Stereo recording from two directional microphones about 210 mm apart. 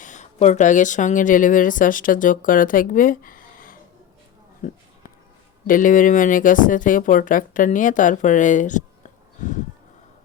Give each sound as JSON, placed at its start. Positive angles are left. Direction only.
{"t": 0.0, "sound": "speech", "side_deg": 35}